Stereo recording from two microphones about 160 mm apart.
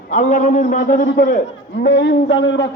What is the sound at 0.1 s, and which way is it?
A man's voice, 50° left (ahead or behind).